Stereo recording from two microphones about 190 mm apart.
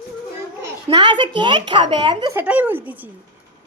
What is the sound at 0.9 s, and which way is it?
A woman's voice, 25° right (ahead or behind).